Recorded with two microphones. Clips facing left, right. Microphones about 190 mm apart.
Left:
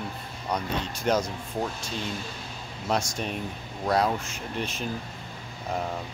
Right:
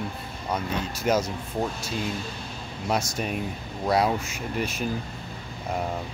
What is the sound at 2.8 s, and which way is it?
Speech, 5° right (ahead or behind).